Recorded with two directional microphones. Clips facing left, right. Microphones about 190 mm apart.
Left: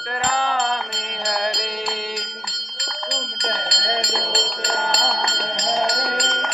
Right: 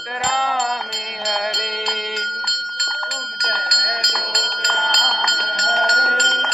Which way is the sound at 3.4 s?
25° left (ahead or behind).